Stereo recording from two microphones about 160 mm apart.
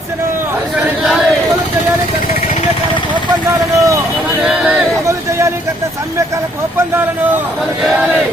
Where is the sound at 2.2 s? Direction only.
65° left (ahead or behind).